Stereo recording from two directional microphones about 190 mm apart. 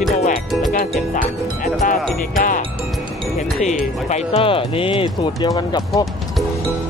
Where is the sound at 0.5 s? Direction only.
Centre (ahead or behind).